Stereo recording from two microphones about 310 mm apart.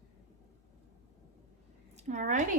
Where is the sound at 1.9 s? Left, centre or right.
Right.